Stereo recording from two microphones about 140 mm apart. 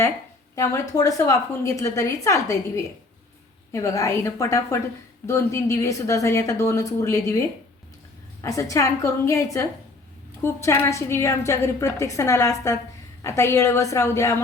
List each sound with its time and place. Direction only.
0.5 s a woman's voice: 25° left (ahead or behind)